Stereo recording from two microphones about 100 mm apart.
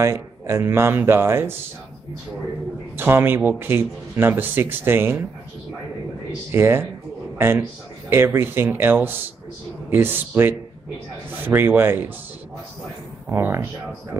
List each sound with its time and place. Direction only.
0.0 s speech: 30° right (ahead or behind)
3.0 s speech: 20° right (ahead or behind)
6.5 s speech: 25° right (ahead or behind)
8.1 s speech: 25° right (ahead or behind)
13.3 s speech: 25° right (ahead or behind)